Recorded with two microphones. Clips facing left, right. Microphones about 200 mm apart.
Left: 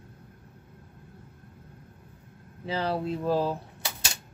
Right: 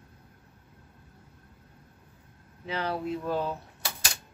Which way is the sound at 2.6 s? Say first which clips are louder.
Left 3 dB; 30° left (ahead or behind).